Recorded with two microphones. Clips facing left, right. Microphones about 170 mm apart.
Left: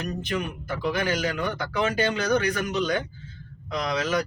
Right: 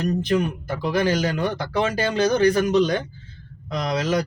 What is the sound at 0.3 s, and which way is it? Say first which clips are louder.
Speech: right 7 dB; 40° right (ahead or behind).